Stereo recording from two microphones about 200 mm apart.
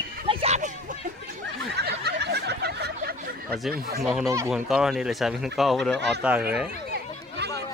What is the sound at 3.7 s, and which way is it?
Speech, 50° right (ahead or behind).